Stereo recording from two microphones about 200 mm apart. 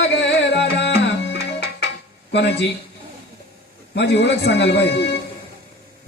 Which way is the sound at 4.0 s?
60° left (ahead or behind).